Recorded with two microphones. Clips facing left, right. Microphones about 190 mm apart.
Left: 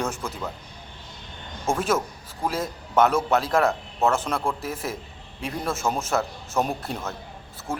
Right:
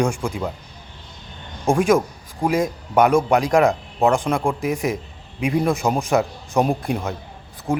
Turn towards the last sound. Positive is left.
turn(degrees=-15)  # may be behind; listen again after turning